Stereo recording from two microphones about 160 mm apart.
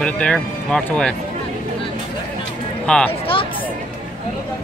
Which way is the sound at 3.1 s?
35° left (ahead or behind).